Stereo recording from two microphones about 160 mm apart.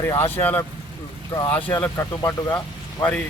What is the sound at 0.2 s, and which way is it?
Speech, 10° left (ahead or behind).